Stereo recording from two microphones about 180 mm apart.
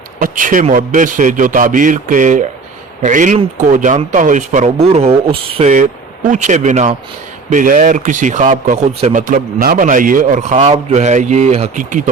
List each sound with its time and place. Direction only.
0.2 s a man's voice: 50° right (ahead or behind)
5.7 s a man's voice: 45° right (ahead or behind)
9.1 s a man's voice: 50° right (ahead or behind)